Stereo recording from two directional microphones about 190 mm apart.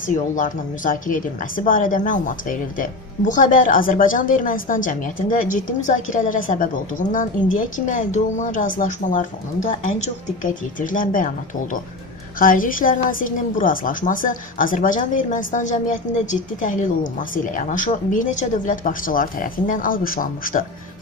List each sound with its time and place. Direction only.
0.0 s a woman's voice: 45° left (ahead or behind)